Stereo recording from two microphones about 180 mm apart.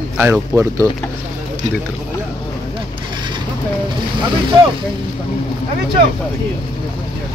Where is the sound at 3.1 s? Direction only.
25° right (ahead or behind).